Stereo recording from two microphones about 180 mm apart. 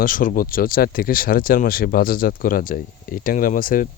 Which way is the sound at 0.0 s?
50° left (ahead or behind).